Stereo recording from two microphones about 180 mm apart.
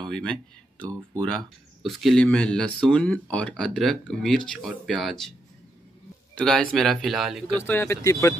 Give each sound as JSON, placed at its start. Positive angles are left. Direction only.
{"t": 0.1, "sound": "speech", "side_deg": 5}
{"t": 6.3, "sound": "speech", "side_deg": 5}
{"t": 7.6, "sound": "speech", "side_deg": 15}